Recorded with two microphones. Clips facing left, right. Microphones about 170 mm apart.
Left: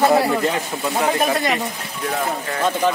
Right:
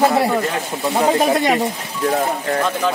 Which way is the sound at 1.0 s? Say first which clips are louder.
Right 4 dB; 25° right (ahead or behind).